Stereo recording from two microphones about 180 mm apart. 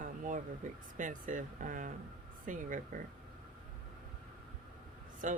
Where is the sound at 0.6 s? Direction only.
45° right (ahead or behind).